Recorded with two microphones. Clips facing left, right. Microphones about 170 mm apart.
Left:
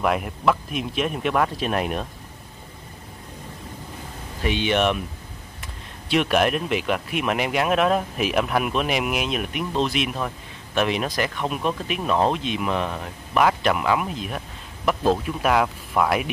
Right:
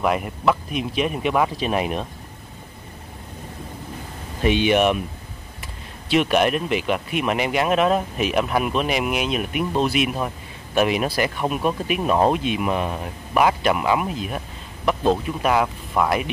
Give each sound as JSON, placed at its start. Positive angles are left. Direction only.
{"t": 0.0, "sound": "speech", "side_deg": 0}
{"t": 4.4, "sound": "speech", "side_deg": -15}
{"t": 6.0, "sound": "speech", "side_deg": 0}